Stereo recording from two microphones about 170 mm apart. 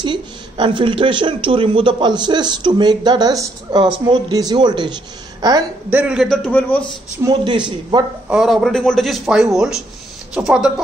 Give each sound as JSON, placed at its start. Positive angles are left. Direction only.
{"t": 0.0, "sound": "speech", "side_deg": -25}
{"t": 5.9, "sound": "speech", "side_deg": -10}
{"t": 7.2, "sound": "speech", "side_deg": -25}
{"t": 8.3, "sound": "speech", "side_deg": -5}